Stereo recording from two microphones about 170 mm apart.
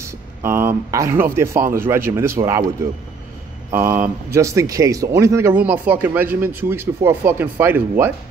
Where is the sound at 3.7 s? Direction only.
15° right (ahead or behind).